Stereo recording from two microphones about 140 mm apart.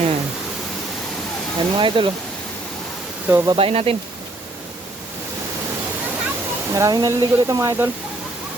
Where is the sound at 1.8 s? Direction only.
35° right (ahead or behind).